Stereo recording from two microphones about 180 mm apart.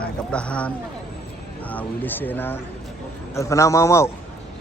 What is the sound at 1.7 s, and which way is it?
Speech, 10° left (ahead or behind).